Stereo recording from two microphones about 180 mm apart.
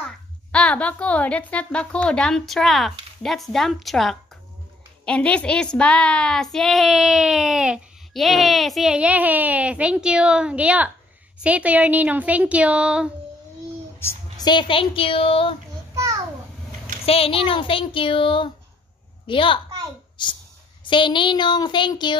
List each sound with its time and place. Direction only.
0.0 s a child's voice: 5° left (ahead or behind)
13.9 s a sound: 15° left (ahead or behind)
14.5 s speech: 25° left (ahead or behind)
15.9 s a sound: 20° right (ahead or behind)
17.0 s speech: 30° left (ahead or behind)
20.8 s speech: 25° left (ahead or behind)